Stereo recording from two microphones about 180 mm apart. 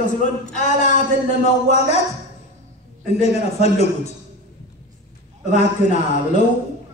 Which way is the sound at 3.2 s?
35° left (ahead or behind).